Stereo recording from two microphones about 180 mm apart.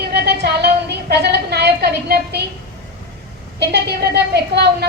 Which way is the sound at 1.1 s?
65° right (ahead or behind).